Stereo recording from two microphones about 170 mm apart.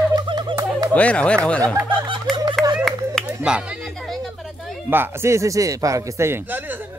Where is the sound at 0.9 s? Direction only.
5° left (ahead or behind).